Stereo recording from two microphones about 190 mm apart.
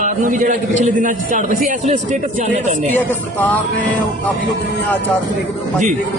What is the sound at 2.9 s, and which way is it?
Speech, 10° left (ahead or behind).